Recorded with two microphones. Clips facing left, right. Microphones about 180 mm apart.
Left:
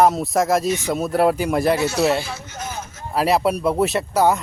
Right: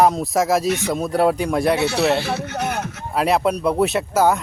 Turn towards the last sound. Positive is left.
turn(degrees=0)  # may be behind; listen again after turning